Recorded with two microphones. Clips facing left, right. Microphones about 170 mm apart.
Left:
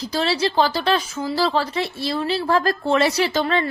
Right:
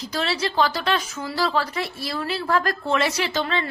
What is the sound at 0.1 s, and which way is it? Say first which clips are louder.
A woman's voice: left 4 dB; 30° left (ahead or behind).